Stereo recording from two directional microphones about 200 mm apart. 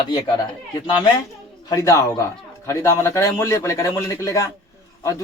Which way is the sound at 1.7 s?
15° left (ahead or behind).